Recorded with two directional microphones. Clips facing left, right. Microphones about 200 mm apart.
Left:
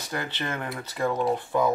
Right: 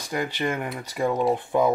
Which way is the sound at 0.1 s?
15° right (ahead or behind).